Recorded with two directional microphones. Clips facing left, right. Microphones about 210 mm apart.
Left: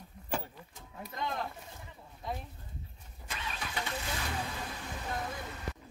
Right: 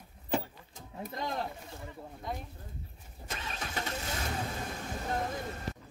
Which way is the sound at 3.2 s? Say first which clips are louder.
Right 1 dB; 45° right (ahead or behind).